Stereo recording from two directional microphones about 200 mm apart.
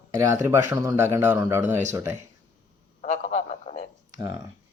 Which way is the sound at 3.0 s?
35° left (ahead or behind).